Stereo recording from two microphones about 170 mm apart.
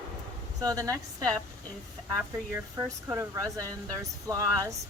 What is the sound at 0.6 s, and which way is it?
Speech, 20° right (ahead or behind).